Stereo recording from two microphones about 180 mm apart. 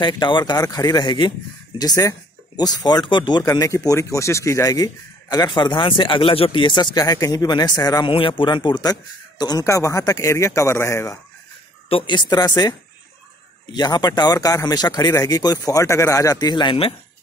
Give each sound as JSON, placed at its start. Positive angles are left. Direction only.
{"t": 0.0, "sound": "speech", "side_deg": 25}
{"t": 11.9, "sound": "speech", "side_deg": 25}
{"t": 13.7, "sound": "speech", "side_deg": 25}